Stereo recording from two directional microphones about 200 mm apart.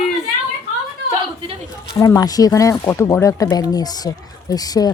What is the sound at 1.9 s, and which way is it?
Speech, 15° left (ahead or behind).